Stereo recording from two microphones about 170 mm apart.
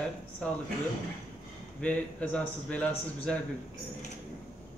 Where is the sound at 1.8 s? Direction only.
5° left (ahead or behind).